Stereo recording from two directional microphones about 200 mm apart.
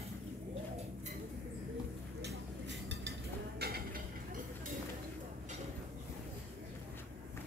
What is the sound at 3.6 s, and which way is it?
Mechanisms, 50° right (ahead or behind).